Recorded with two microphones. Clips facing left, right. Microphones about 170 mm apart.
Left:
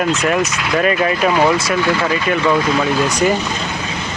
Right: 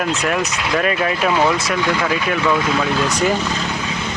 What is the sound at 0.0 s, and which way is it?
Speech, centre (ahead or behind).